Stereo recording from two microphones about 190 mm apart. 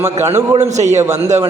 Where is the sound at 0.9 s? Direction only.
15° right (ahead or behind).